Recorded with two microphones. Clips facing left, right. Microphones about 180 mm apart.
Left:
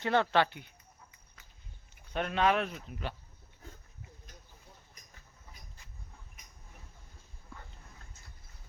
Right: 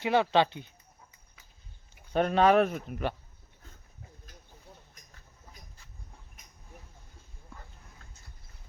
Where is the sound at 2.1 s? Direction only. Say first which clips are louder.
Right 7 dB; 40° right (ahead or behind); by 3.2 s 55° right (ahead or behind).